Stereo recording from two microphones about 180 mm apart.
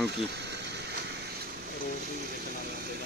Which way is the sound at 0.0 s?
70° right (ahead or behind).